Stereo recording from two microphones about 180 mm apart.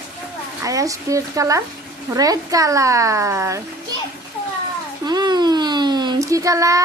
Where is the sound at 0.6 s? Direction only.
20° right (ahead or behind).